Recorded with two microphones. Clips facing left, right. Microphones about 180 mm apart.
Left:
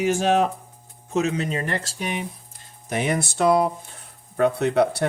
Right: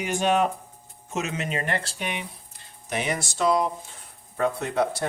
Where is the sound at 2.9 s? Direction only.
50° left (ahead or behind).